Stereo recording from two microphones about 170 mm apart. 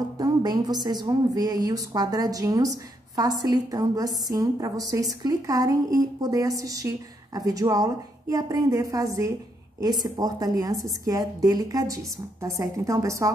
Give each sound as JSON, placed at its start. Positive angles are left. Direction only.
{"t": 0.2, "sound": "music", "side_deg": -25}
{"t": 0.8, "sound": "a woman's voice", "side_deg": -25}